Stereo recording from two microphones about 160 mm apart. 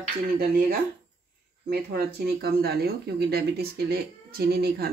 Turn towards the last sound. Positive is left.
turn(degrees=-80)